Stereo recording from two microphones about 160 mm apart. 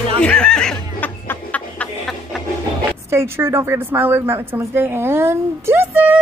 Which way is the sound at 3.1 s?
15° right (ahead or behind).